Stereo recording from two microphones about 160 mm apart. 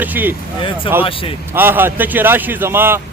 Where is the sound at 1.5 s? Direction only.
10° right (ahead or behind).